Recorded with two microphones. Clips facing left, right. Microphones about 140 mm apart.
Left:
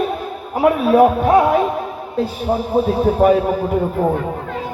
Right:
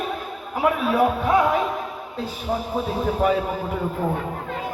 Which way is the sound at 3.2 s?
45° left (ahead or behind).